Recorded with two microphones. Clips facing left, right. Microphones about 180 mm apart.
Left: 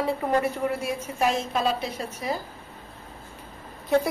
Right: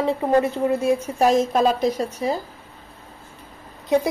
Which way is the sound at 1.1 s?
40° right (ahead or behind).